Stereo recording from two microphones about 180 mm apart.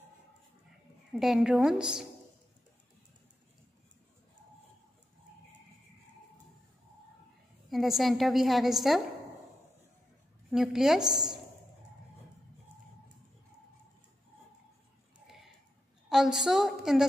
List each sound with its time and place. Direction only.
1.1 s a woman's voice: centre (ahead or behind)
7.7 s a woman's voice: centre (ahead or behind)
10.5 s a woman's voice: centre (ahead or behind)
15.2 s a sound: centre (ahead or behind)
16.1 s a woman's voice: centre (ahead or behind)